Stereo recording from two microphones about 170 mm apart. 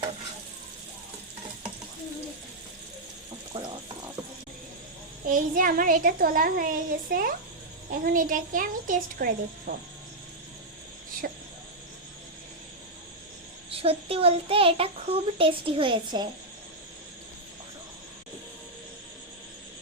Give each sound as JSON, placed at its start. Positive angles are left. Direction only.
{"t": 5.3, "sound": "a child's voice", "side_deg": -55}
{"t": 11.2, "sound": "a child's voice", "side_deg": -60}
{"t": 13.7, "sound": "a child's voice", "side_deg": -35}